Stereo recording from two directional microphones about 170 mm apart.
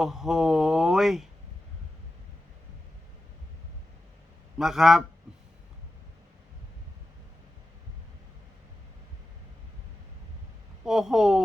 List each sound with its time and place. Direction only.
0.0 s speech: 5° right (ahead or behind)
4.5 s speech: 5° right (ahead or behind)
10.8 s speech: 5° right (ahead or behind)